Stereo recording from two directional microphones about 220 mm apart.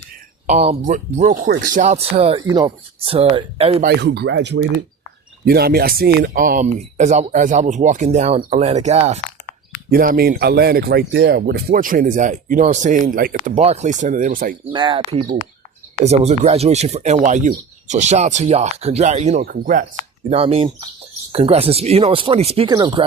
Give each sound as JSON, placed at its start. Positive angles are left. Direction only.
{"t": 0.4, "sound": "speech", "side_deg": -30}
{"t": 3.8, "sound": "speech", "side_deg": -50}
{"t": 9.9, "sound": "speech", "side_deg": -40}
{"t": 14.7, "sound": "speech", "side_deg": -20}